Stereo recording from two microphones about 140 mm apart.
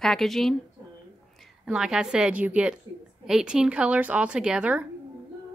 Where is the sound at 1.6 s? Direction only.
5° right (ahead or behind).